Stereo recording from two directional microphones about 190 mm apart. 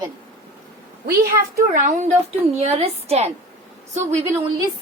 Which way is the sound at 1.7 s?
40° right (ahead or behind).